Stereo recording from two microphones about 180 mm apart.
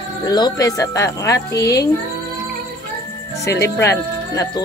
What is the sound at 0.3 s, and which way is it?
Speech, 20° left (ahead or behind).